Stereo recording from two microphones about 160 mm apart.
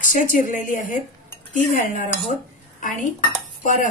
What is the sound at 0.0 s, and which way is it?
Speech, 55° left (ahead or behind).